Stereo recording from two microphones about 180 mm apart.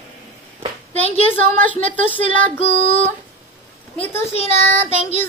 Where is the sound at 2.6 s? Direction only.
35° left (ahead or behind).